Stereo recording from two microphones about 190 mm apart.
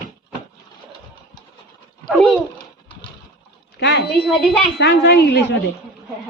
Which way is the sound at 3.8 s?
60° left (ahead or behind).